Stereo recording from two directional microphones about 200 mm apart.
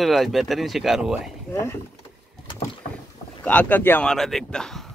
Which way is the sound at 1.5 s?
15° left (ahead or behind).